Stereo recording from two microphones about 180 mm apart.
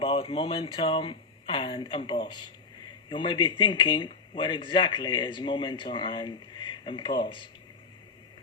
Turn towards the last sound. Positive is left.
turn(degrees=25)  # may be behind; listen again after turning